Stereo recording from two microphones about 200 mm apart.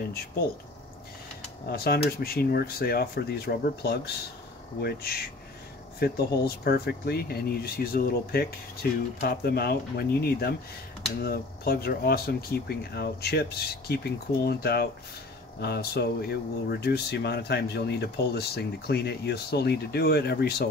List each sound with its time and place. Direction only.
1.7 s speech: 50° left (ahead or behind)